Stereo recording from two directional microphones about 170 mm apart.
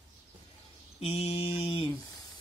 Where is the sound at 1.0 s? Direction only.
35° left (ahead or behind).